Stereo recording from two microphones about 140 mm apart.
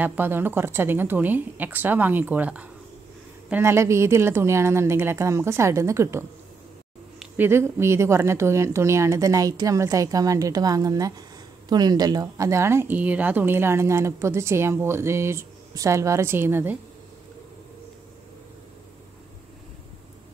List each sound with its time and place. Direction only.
0.0 s a woman's voice: 15° right (ahead or behind)
7.3 s a woman's voice: 15° right (ahead or behind)